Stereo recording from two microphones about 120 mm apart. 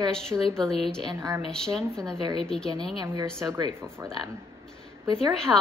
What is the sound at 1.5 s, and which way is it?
A woman's voice, 5° left (ahead or behind).